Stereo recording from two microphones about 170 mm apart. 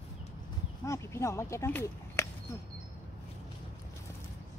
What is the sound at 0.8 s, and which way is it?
Speech, 15° left (ahead or behind).